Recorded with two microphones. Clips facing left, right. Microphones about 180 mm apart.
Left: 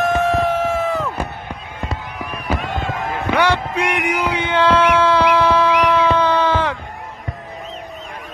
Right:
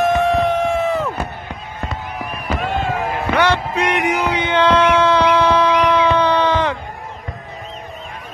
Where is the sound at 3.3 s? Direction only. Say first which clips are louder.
Even; 10° left (ahead or behind).